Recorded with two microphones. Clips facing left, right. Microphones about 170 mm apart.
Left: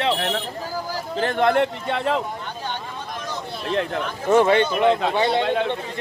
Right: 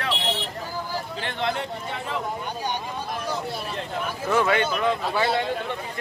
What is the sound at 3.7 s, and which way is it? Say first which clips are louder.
Speech: left 8 dB; 70° left (ahead or behind).